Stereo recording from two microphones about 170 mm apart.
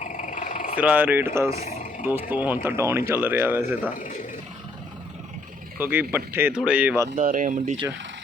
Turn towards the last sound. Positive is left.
turn(degrees=-45)  # may be behind; listen again after turning